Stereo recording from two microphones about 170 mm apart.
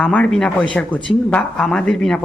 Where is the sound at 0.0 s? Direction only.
5° left (ahead or behind).